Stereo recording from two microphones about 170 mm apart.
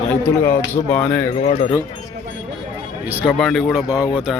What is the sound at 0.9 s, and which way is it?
Speech, 10° left (ahead or behind).